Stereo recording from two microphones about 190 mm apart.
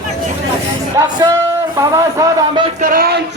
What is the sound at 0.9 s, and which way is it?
Speech, 20° right (ahead or behind).